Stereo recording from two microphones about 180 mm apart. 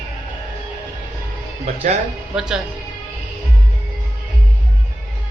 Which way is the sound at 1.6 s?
35° right (ahead or behind).